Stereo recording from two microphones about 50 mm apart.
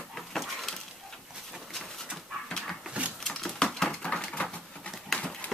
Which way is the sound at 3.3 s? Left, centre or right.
Centre.